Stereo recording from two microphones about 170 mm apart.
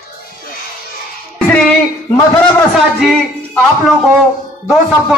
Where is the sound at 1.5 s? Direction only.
10° left (ahead or behind).